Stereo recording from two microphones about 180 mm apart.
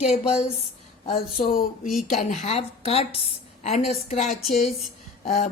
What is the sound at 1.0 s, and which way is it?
Speech, 55° left (ahead or behind).